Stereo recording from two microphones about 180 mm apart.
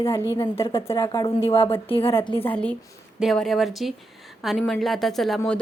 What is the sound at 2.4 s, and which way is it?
Speech, 5° left (ahead or behind).